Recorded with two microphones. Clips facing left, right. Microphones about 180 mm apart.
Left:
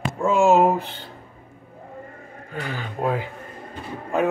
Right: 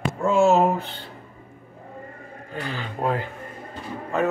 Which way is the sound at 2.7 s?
10° left (ahead or behind).